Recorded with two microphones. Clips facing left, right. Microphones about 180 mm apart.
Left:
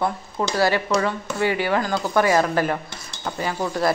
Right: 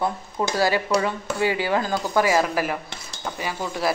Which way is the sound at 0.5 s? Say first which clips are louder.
Left 1 dB; 15° right (ahead or behind).